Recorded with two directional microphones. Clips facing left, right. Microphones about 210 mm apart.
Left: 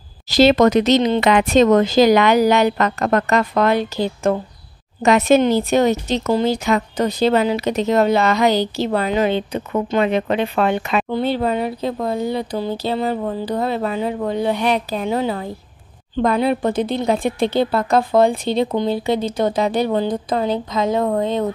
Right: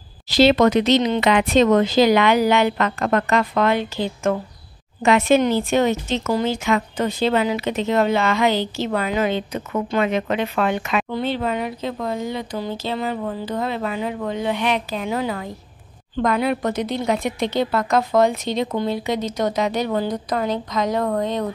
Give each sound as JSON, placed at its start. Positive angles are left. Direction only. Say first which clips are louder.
{"t": 0.3, "sound": "a woman's voice", "louder": "left 2 dB", "side_deg": 45}